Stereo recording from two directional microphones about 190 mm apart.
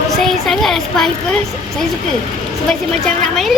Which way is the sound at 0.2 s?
Centre (ahead or behind).